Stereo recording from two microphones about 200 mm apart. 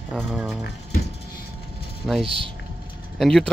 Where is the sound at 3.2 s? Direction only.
Centre (ahead or behind).